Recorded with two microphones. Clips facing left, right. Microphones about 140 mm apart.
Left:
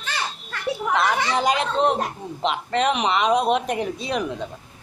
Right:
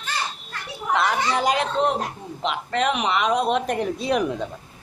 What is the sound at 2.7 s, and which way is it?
Speech, 5° right (ahead or behind).